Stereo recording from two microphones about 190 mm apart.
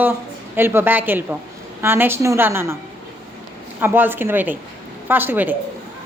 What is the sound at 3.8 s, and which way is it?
Speech, 10° right (ahead or behind).